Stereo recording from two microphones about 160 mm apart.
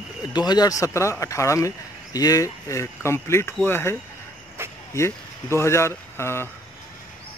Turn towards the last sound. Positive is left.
turn(degrees=15)  # may be behind; listen again after turning